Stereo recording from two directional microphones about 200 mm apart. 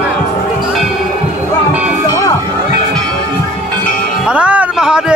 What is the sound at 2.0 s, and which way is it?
Music, 15° left (ahead or behind).